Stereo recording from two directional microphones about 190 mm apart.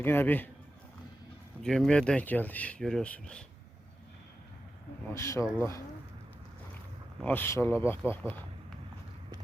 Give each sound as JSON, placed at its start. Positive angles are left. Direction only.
{"t": 0.0, "sound": "speech", "side_deg": 10}
{"t": 1.6, "sound": "speech", "side_deg": 0}
{"t": 5.1, "sound": "speech", "side_deg": 15}
{"t": 7.2, "sound": "speech", "side_deg": 10}